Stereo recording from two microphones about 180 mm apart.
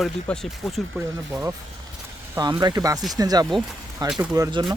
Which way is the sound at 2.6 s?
20° right (ahead or behind).